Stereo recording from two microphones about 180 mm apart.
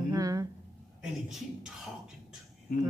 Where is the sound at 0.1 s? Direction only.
20° right (ahead or behind).